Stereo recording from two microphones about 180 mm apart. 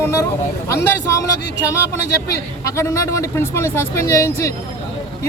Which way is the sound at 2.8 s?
15° left (ahead or behind).